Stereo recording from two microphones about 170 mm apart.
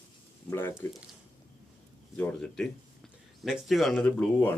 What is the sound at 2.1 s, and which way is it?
Speech, 5° left (ahead or behind).